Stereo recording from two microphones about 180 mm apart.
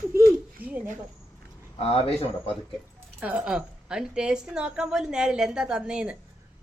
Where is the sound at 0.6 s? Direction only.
10° right (ahead or behind).